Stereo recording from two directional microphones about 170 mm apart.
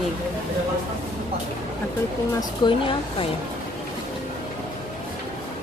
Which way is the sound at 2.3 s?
30° left (ahead or behind).